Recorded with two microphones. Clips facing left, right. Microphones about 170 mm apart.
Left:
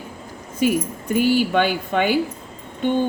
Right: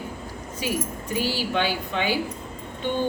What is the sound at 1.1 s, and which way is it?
A woman's voice, 50° left (ahead or behind).